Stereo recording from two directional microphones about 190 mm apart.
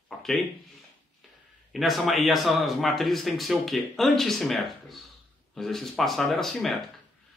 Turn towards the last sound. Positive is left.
turn(degrees=0)  # may be behind; listen again after turning